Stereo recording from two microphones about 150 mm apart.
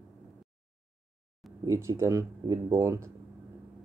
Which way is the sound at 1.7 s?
20° right (ahead or behind).